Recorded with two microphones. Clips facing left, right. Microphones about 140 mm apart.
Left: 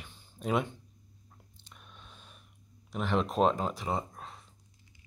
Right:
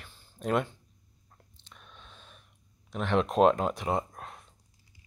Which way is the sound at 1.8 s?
10° left (ahead or behind).